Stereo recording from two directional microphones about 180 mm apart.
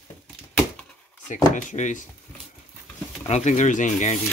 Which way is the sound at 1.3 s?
45° left (ahead or behind).